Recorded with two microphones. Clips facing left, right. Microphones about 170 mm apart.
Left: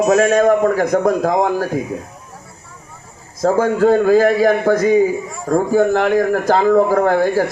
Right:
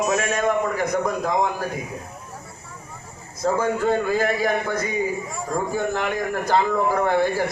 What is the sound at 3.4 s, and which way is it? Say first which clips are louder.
Speech: left 7 dB; 90° left.